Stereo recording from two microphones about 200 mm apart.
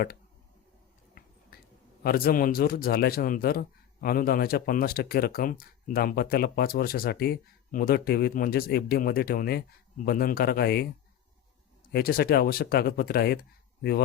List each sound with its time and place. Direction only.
1.2 s a sound: 45° left (ahead or behind)
2.0 s a man's voice: 50° left (ahead or behind)
11.9 s a man's voice: 50° left (ahead or behind)